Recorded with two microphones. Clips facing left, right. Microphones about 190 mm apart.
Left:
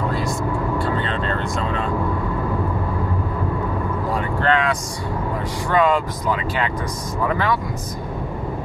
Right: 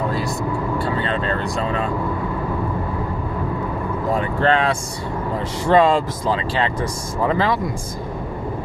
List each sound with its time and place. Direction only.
4.4 s speech: 30° right (ahead or behind)